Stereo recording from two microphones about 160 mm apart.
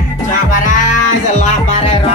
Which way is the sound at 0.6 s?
50° left (ahead or behind).